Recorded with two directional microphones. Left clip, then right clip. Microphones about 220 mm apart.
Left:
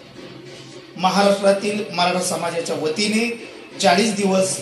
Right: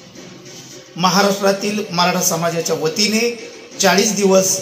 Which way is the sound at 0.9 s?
35° right (ahead or behind).